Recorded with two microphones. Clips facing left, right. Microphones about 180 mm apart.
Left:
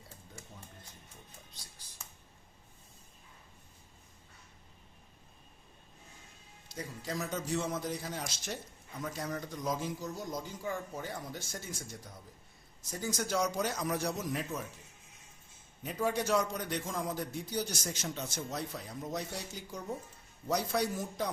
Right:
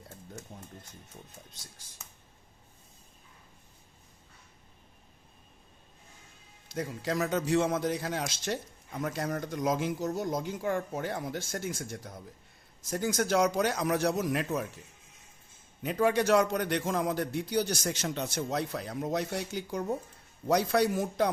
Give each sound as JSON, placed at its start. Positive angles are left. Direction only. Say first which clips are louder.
{"t": 6.7, "sound": "a man's voice", "louder": "right 7 dB", "side_deg": -75}
{"t": 10.2, "sound": "a man's voice", "louder": "right 7 dB", "side_deg": -65}
{"t": 15.8, "sound": "a man's voice", "louder": "right 6 dB", "side_deg": -75}